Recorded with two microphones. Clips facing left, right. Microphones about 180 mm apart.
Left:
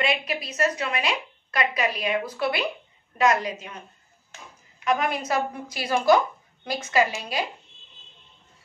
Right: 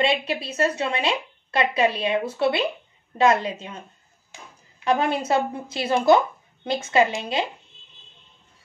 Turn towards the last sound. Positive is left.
turn(degrees=-25)  # may be behind; listen again after turning